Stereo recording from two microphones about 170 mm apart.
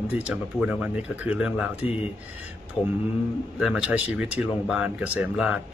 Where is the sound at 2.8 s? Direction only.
30° left (ahead or behind).